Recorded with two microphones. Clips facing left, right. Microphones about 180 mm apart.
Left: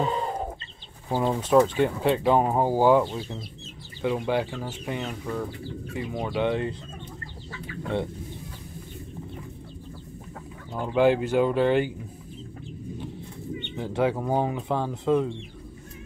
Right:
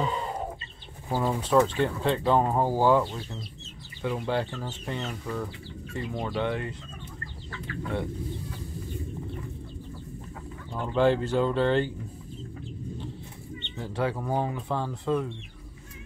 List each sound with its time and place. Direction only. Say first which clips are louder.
1.1 s speech: left 3 dB; 15° left (ahead or behind)
10.8 s speech: left 2 dB; 10° left (ahead or behind)
13.6 s speech: left 4 dB; 15° left (ahead or behind)